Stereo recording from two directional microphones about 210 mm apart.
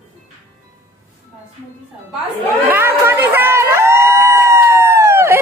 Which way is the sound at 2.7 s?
10° right (ahead or behind).